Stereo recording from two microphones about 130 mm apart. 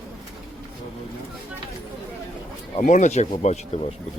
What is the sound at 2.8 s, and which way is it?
Speech, 70° left (ahead or behind).